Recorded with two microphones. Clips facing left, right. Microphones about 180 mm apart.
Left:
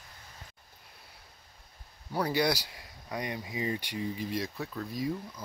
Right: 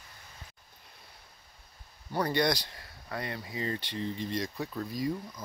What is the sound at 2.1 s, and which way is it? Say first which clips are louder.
Speech: even; 5° left (ahead or behind).